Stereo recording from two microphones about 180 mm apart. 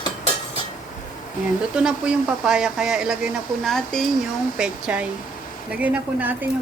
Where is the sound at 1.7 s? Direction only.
5° right (ahead or behind).